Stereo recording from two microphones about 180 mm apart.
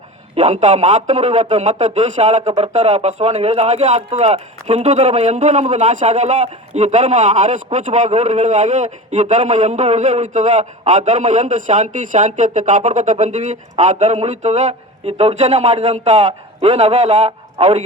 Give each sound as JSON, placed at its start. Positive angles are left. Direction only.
{"t": 0.3, "sound": "a man's voice", "side_deg": -40}